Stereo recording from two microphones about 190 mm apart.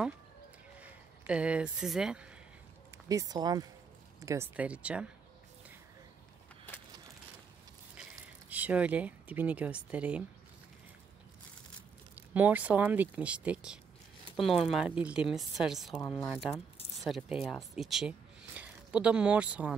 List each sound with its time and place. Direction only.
0.7 s speech: 5° right (ahead or behind)
3.1 s speech: 20° right (ahead or behind)
4.6 s speech: 5° right (ahead or behind)
8.0 s speech: 10° right (ahead or behind)
12.2 s a woman's voice: 10° right (ahead or behind)